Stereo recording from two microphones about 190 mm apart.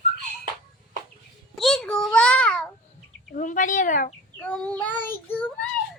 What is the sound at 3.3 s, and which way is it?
Speech, 45° left (ahead or behind).